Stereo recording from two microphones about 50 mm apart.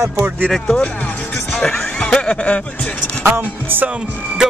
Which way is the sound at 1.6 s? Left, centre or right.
Centre.